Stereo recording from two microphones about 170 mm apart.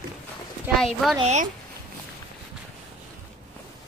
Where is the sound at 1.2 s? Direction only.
40° right (ahead or behind).